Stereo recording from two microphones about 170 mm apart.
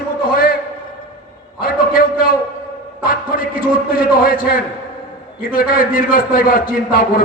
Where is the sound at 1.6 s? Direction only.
55° left (ahead or behind).